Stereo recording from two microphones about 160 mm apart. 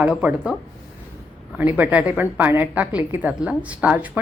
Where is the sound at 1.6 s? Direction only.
10° right (ahead or behind).